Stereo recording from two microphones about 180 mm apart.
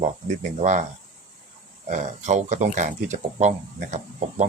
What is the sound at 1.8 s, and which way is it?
Speech, 40° right (ahead or behind).